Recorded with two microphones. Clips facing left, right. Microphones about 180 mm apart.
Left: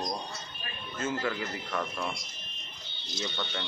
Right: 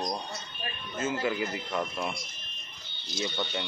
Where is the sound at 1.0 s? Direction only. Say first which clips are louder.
Right 2 dB; 10° right (ahead or behind).